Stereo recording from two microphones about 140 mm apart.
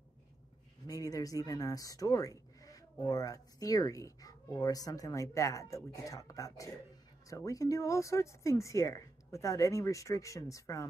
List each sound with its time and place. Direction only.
0.8 s speech: 25° left (ahead or behind)